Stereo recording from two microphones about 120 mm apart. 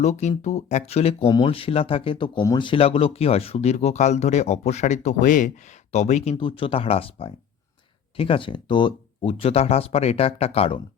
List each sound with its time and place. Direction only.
0.0 s speech: 75° left (ahead or behind)
1.3 s speech: 45° left (ahead or behind); by 6.3 s 75° left (ahead or behind)
6.3 s speech: 45° left (ahead or behind)